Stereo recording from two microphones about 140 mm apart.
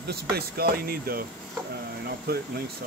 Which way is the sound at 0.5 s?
90° right.